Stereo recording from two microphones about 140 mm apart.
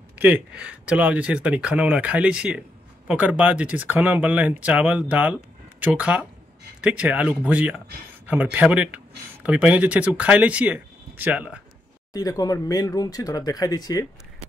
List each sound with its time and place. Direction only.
0.2 s speech: 10° right (ahead or behind)
12.1 s speech: 25° left (ahead or behind)